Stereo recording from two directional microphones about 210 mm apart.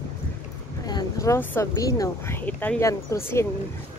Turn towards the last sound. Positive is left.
turn(degrees=15)  # may be behind; listen again after turning